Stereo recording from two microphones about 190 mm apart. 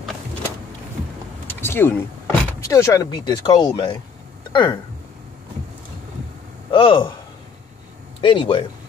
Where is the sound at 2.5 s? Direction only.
15° left (ahead or behind).